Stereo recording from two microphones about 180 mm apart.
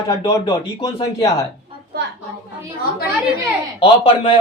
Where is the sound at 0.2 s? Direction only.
20° left (ahead or behind).